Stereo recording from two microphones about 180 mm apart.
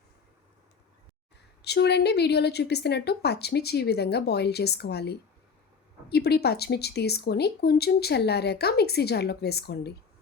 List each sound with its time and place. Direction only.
1.6 s speech: 70° left (ahead or behind)